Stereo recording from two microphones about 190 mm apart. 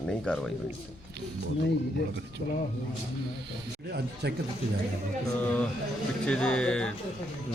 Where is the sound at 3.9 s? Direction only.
60° right (ahead or behind).